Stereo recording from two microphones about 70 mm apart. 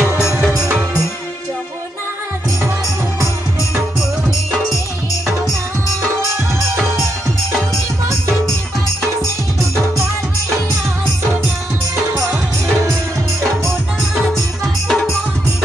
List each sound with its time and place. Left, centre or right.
0.0 s music: centre
14.9 s music: centre